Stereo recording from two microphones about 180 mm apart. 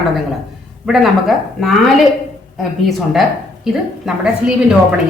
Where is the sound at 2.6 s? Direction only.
Centre (ahead or behind).